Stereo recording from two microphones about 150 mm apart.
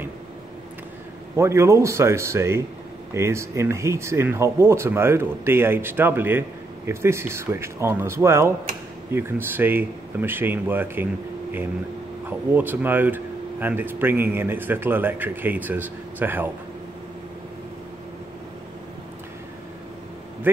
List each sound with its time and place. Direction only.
1.3 s speech: 20° right (ahead or behind)
12.3 s speech: 10° right (ahead or behind)